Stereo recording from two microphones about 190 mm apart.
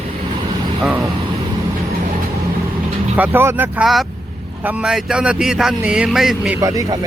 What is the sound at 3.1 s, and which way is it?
Speech, 10° right (ahead or behind).